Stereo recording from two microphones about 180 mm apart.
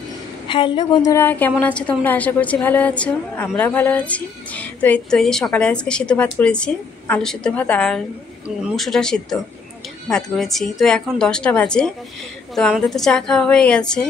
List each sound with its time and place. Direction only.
0.5 s a woman's voice: 25° left (ahead or behind)
1.1 s a woman's voice: 10° left (ahead or behind)